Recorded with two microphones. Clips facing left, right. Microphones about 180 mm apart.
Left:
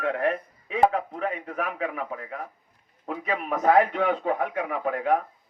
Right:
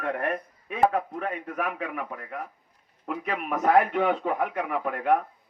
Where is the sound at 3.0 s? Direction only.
60° right (ahead or behind).